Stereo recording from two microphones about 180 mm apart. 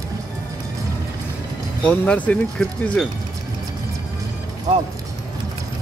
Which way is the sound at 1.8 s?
10° left (ahead or behind).